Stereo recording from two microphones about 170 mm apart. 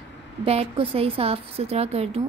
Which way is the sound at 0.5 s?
35° right (ahead or behind).